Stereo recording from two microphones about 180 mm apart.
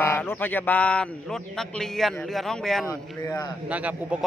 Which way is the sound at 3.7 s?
10° right (ahead or behind).